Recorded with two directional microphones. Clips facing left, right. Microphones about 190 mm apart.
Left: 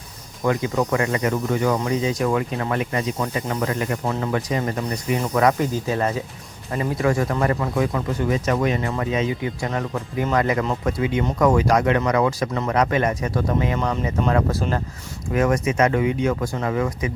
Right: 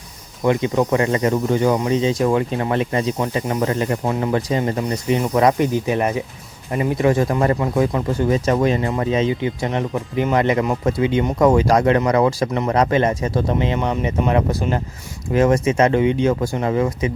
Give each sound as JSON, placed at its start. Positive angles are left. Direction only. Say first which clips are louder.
{"t": 0.4, "sound": "speech", "louder": "right 4 dB", "side_deg": -20}